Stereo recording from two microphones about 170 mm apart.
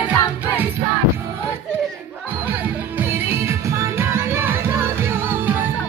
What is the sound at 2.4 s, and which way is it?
Music, 10° right (ahead or behind).